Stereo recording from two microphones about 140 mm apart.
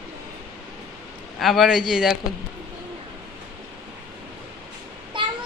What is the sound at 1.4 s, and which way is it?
Speech, centre (ahead or behind).